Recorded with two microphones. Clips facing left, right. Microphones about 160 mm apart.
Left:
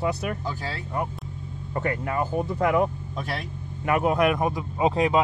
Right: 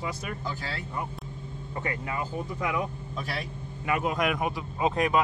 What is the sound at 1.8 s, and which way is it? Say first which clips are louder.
Speech: left 6 dB; 50° left (ahead or behind).